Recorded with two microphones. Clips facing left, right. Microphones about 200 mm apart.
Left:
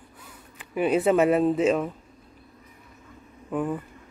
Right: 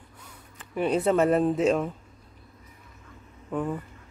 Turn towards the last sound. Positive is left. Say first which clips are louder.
# left 2 dB
turn(degrees=5)  # may be behind; listen again after turning